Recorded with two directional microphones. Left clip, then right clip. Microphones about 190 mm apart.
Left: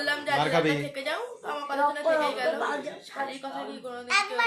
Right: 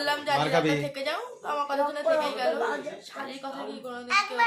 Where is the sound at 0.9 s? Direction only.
10° right (ahead or behind).